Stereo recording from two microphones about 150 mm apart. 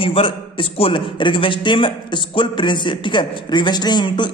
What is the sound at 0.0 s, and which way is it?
A man's voice, 35° left (ahead or behind).